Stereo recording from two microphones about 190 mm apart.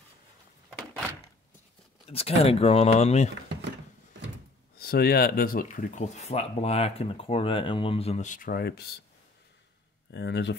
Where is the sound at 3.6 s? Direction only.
70° right (ahead or behind).